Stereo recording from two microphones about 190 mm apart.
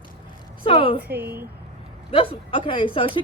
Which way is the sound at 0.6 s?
30° left (ahead or behind).